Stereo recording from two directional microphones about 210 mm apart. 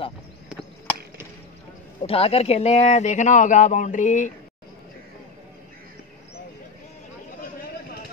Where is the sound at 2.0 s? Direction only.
25° left (ahead or behind).